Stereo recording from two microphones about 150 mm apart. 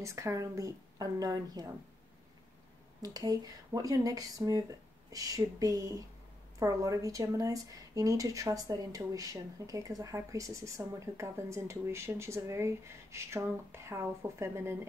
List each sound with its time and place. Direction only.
0.0 s a woman's voice: 20° right (ahead or behind)
3.0 s a woman's voice: 25° right (ahead or behind)